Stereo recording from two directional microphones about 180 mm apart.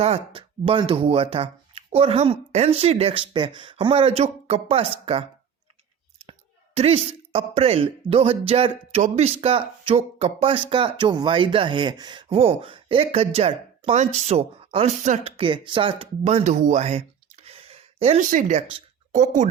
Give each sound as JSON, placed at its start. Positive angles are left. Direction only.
{"t": 0.0, "sound": "speech", "side_deg": -35}
{"t": 6.7, "sound": "speech", "side_deg": -35}